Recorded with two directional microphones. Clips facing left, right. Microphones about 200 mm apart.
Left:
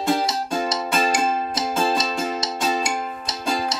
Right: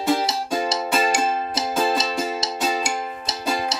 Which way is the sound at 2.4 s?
30° right (ahead or behind).